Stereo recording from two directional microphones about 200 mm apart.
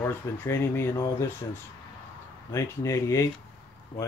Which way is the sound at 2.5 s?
15° left (ahead or behind).